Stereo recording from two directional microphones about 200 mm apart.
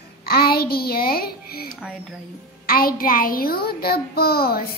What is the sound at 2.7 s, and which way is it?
A child's voice, 45° left (ahead or behind).